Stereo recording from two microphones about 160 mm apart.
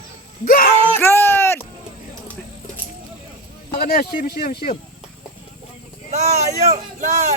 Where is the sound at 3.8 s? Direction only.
65° left (ahead or behind).